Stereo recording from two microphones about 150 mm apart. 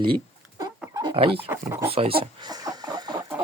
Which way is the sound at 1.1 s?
35° right (ahead or behind).